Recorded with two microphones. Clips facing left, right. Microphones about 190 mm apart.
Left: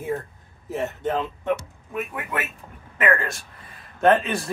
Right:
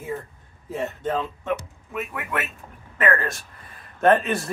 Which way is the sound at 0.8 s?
20° left (ahead or behind).